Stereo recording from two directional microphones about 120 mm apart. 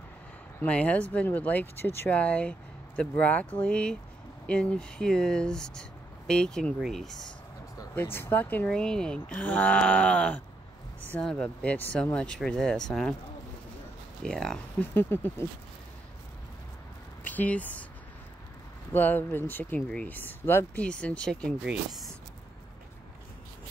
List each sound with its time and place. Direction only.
0.6 s speech: 10° left (ahead or behind)
7.9 s speech: 20° left (ahead or behind)
14.2 s speech: 5° left (ahead or behind)
15.0 s speech: 20° left (ahead or behind)
17.2 s speech: 15° left (ahead or behind)
18.9 s speech: 15° left (ahead or behind)